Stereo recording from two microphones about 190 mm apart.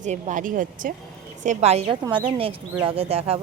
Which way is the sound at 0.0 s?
40° right (ahead or behind).